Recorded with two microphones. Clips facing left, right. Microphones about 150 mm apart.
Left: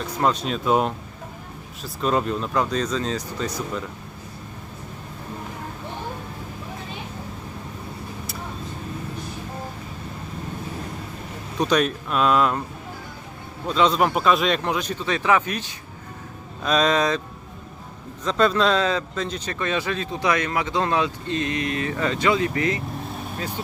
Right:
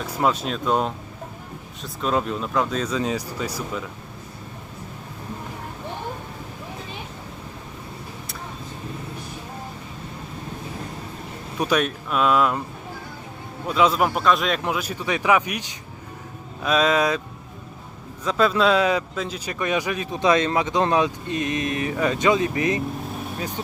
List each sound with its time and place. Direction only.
0.0 s speech: 5° right (ahead or behind)
11.6 s speech: 5° right (ahead or behind)
13.7 s speech: 10° right (ahead or behind)
18.3 s speech: 5° right (ahead or behind)